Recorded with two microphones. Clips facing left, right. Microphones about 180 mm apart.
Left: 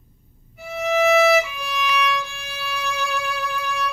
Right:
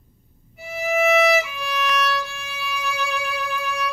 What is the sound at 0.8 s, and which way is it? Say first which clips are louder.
Violin: left 2 dB; 5° right (ahead or behind).